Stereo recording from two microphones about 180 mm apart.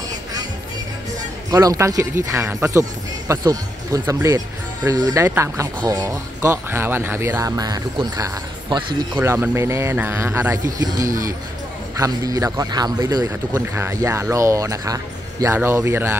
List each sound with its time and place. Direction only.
1.5 s speech: 20° right (ahead or behind)
9.2 s a man's voice: 15° right (ahead or behind)